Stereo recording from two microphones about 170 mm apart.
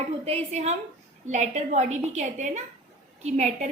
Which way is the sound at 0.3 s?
40° right (ahead or behind).